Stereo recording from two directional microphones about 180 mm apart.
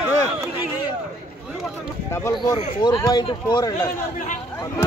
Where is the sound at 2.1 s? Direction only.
15° left (ahead or behind).